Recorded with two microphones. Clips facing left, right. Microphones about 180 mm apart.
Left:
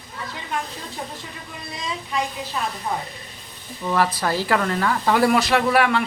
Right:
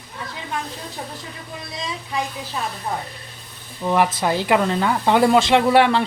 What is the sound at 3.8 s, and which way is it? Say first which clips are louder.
Speech: right 3 dB; 20° right (ahead or behind).